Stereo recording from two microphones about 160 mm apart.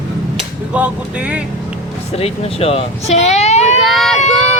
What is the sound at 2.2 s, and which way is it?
Speech, 40° left (ahead or behind).